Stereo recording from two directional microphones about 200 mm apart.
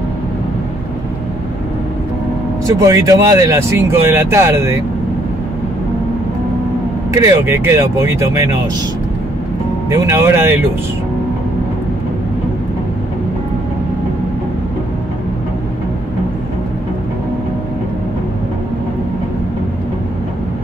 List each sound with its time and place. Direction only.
2.6 s speech: 15° right (ahead or behind)
7.2 s speech: 15° right (ahead or behind)
9.8 s speech: 15° right (ahead or behind)